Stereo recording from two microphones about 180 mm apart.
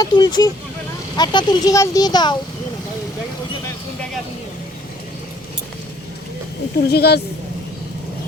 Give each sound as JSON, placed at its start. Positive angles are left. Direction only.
{"t": 0.0, "sound": "speech", "side_deg": 25}
{"t": 6.7, "sound": "speech", "side_deg": 65}